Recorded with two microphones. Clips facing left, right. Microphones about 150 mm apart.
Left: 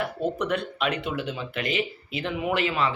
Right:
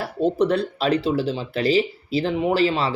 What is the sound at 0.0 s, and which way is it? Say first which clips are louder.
Speech: right 7 dB; 30° right (ahead or behind).